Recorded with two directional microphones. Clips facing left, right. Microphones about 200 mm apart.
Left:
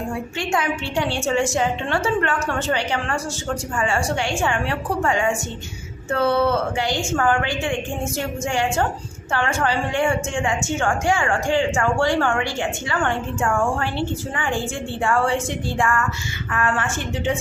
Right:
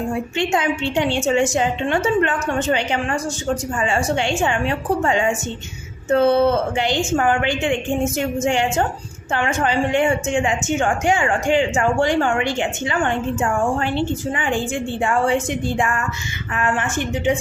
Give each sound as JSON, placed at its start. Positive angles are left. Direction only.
{"t": 0.1, "sound": "a woman's voice", "side_deg": -20}